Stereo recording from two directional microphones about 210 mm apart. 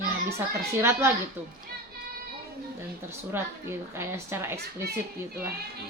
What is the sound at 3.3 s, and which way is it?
A woman's voice, 10° right (ahead or behind).